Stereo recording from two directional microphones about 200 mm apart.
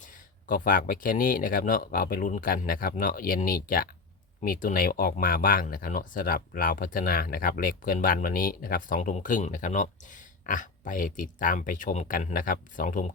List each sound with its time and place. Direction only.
0.4 s speech: 45° left (ahead or behind)